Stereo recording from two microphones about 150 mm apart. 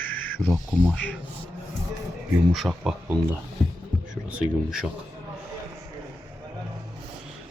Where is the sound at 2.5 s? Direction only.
Centre (ahead or behind).